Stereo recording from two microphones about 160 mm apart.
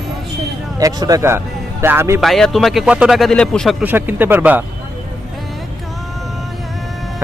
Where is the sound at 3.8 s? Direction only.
10° right (ahead or behind).